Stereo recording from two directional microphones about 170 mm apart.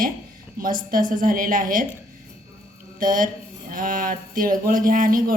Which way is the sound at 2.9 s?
55° right (ahead or behind).